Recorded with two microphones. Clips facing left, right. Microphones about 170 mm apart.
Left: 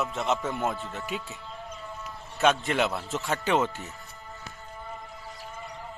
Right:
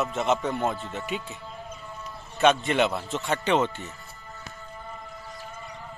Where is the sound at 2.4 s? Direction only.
Centre (ahead or behind).